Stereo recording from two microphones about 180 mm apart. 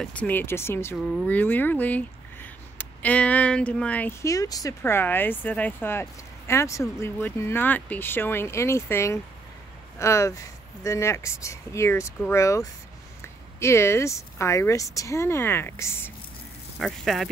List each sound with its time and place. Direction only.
0.0 s speech: 10° left (ahead or behind)
16.7 s speech: centre (ahead or behind)